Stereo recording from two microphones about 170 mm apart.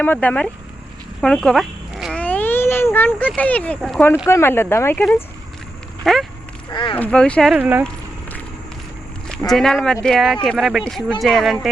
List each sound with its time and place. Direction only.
0.0 s speech: 10° left (ahead or behind)
1.2 s a sound: 5° left (ahead or behind)
2.2 s a sound: 10° left (ahead or behind)
4.3 s speech: 15° left (ahead or behind)
6.0 s speech: centre (ahead or behind)
6.7 s speech: 25° left (ahead or behind)
6.9 s speech: 5° left (ahead or behind)
7.6 s speech: 10° right (ahead or behind)
9.5 s speech: centre (ahead or behind)